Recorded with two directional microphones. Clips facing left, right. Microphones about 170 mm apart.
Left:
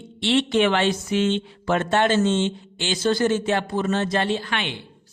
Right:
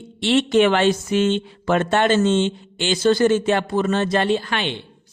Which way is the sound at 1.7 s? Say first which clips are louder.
Right 2 dB; 75° right (ahead or behind).